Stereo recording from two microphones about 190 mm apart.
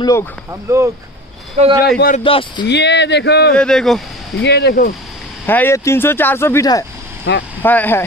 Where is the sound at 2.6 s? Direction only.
65° left (ahead or behind).